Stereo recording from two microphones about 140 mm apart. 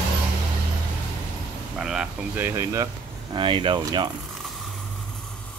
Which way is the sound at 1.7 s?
5° right (ahead or behind).